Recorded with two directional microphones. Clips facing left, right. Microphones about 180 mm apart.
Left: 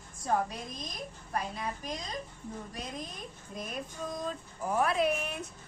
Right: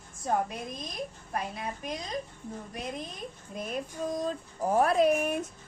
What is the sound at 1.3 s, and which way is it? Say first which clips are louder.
Speech: left 2 dB; 25° right (ahead or behind).